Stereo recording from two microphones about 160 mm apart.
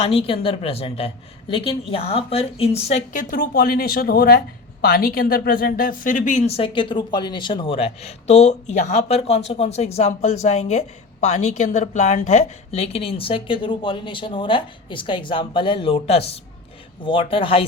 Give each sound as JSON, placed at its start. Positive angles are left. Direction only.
{"t": 0.0, "sound": "a woman's voice", "side_deg": 35}